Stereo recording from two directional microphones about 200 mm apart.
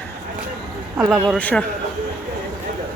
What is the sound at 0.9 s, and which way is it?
Speech, 5° right (ahead or behind).